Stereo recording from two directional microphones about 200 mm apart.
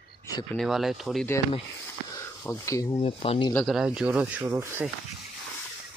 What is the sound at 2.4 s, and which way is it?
Speech, 15° left (ahead or behind).